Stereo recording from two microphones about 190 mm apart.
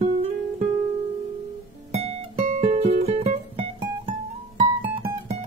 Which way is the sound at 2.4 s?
35° right (ahead or behind).